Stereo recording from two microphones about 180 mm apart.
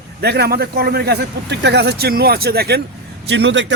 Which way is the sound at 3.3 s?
75° right (ahead or behind).